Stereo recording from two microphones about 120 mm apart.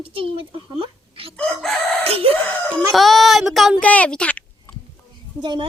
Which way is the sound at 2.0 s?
55° right (ahead or behind).